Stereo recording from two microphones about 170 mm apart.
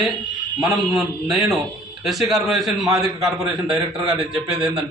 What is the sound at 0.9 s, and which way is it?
A man's voice, centre (ahead or behind).